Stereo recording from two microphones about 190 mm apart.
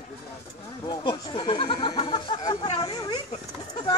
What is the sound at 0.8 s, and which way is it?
Goat, 25° left (ahead or behind).